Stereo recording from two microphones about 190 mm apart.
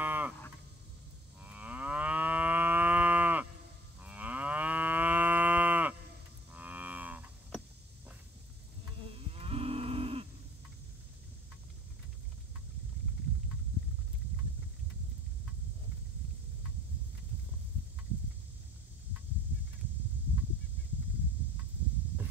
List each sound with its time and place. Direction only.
0.0 s cattle: 10° right (ahead or behind)
1.4 s livestock: 5° right (ahead or behind)
6.5 s music: 10° right (ahead or behind)
9.1 s moo: 30° right (ahead or behind)